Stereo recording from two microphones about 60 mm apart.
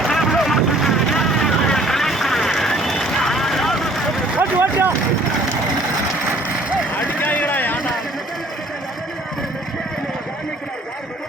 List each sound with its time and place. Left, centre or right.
0.0 s vehicle: centre
4.4 s vehicle: right
6.9 s vehicle: left